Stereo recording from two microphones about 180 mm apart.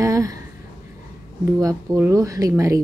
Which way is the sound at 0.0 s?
15° right (ahead or behind).